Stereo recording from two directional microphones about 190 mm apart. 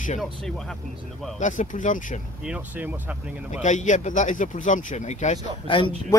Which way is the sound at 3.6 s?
40° left (ahead or behind).